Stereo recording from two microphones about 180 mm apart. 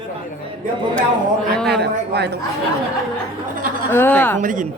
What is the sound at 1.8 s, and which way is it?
Speech, 65° right (ahead or behind).